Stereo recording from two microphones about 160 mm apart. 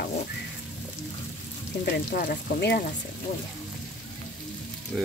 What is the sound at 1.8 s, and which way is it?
Speech, 75° left (ahead or behind).